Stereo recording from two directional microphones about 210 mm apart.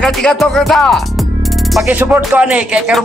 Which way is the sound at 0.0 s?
5° left (ahead or behind).